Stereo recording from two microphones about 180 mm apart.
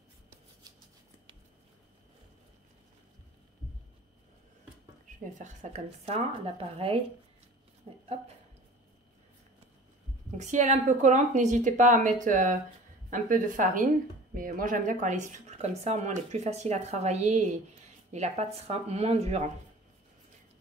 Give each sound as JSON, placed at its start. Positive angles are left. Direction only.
{"t": 5.4, "sound": "speech", "side_deg": -40}
{"t": 7.8, "sound": "a sound", "side_deg": -35}
{"t": 10.3, "sound": "a woman's voice", "side_deg": -40}